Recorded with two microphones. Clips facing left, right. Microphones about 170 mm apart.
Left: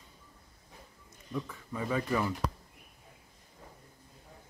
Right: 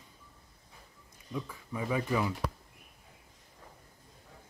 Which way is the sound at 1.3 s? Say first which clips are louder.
Left 1 dB; 10° right (ahead or behind).